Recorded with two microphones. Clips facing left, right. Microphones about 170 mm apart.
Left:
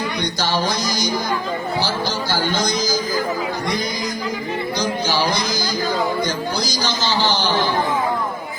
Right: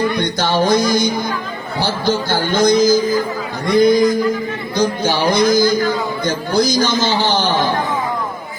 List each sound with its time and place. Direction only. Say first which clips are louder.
0.2 s speech: right 5 dB; 55° right (ahead or behind)
3.8 s a sound: right 14 dB; 55° right (ahead or behind)
6.2 s a man's voice: right 7 dB; 50° right (ahead or behind)